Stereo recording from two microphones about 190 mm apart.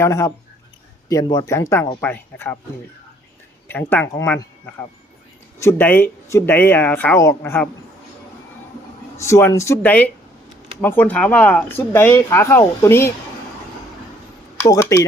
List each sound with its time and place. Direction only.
0.0 s speech: 15° left (ahead or behind)
3.7 s speech: 10° left (ahead or behind)
9.1 s speech: 15° left (ahead or behind)
14.7 s speech: 15° left (ahead or behind)